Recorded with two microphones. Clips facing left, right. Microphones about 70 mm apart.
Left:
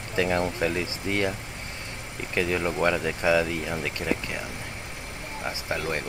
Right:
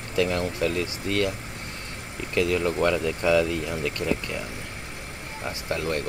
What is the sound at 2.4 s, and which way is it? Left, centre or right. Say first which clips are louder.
Speech: right 2 dB; centre.